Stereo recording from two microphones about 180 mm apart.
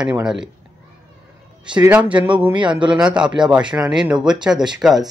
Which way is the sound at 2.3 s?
5° right (ahead or behind).